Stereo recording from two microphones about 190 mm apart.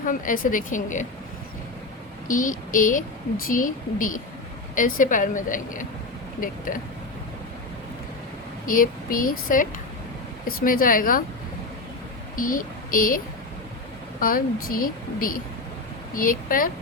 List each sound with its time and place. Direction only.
0.0 s a woman's voice: 45° left (ahead or behind)
2.2 s a woman's voice: 45° left (ahead or behind)
8.6 s a woman's voice: 45° left (ahead or behind)
12.4 s a sound: 45° left (ahead or behind)
14.2 s a woman's voice: 50° left (ahead or behind)